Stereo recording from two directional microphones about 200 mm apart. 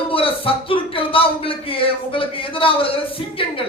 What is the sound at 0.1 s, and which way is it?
Speech, 25° left (ahead or behind).